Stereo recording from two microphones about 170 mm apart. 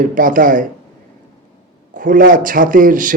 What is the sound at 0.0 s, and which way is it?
Speech, 50° right (ahead or behind).